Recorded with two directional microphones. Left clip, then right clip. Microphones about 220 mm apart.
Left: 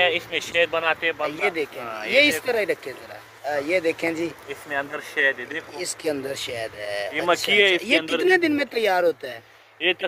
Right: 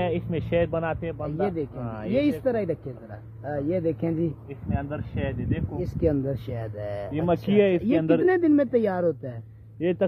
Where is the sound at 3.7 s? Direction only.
10° right (ahead or behind).